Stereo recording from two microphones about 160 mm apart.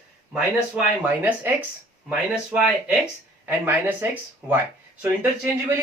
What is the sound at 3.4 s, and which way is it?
Speech, 10° right (ahead or behind).